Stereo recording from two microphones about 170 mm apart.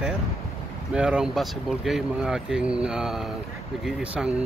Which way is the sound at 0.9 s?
5° right (ahead or behind).